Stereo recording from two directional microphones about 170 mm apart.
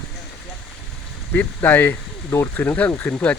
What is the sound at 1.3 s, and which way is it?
Speech, 10° left (ahead or behind).